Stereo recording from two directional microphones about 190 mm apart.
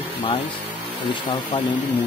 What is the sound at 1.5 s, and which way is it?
Speech, 25° left (ahead or behind).